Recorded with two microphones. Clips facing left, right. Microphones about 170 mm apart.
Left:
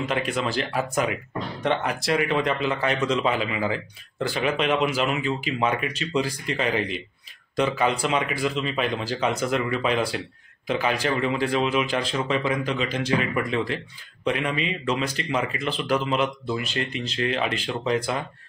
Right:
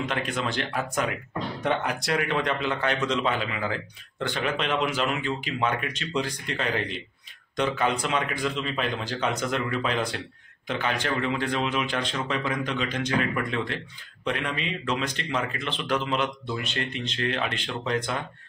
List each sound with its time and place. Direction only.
0.0 s speech: 5° left (ahead or behind)